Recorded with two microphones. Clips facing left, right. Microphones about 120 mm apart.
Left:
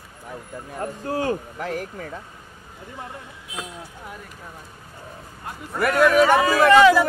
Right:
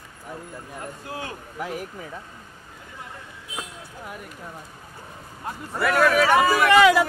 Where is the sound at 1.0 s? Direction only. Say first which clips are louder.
Left 12 dB; 40° left (ahead or behind).